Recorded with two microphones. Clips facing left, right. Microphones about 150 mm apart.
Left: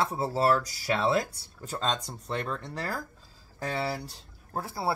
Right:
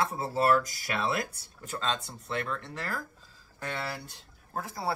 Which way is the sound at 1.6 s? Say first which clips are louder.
Left 2 dB; 35° left (ahead or behind).